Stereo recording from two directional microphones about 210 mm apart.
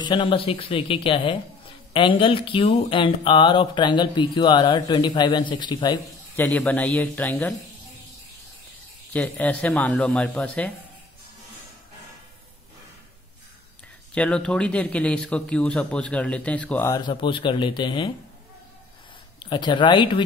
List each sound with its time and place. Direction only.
0.0 s speech: 20° left (ahead or behind)
6.3 s speech: 10° left (ahead or behind)
9.1 s speech: 5° left (ahead or behind)
14.1 s speech: 5° left (ahead or behind)
17.0 s speech: 20° left (ahead or behind)
19.4 s speech: 20° left (ahead or behind)